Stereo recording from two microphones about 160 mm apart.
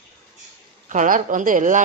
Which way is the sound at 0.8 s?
55° right (ahead or behind).